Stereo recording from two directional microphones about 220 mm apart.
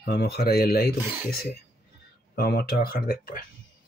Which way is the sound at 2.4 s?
45° left (ahead or behind).